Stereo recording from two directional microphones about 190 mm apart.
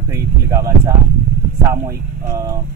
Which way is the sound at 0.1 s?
15° right (ahead or behind).